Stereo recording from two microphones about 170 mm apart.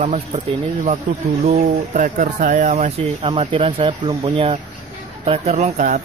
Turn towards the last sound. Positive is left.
turn(degrees=-45)  # may be behind; listen again after turning